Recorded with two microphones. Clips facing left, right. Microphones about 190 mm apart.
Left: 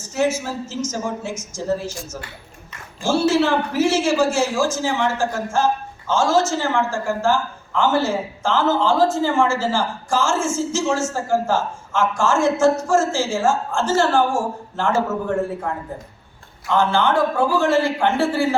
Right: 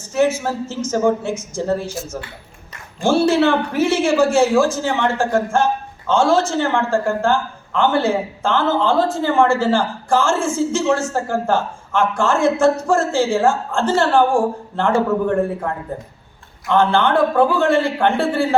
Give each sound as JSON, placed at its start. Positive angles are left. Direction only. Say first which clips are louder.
{"t": 0.1, "sound": "speech", "louder": "right 3 dB", "side_deg": -60}
{"t": 3.0, "sound": "speech", "louder": "right 3 dB", "side_deg": -60}